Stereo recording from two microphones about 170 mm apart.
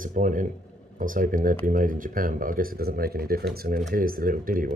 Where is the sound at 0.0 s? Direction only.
50° right (ahead or behind).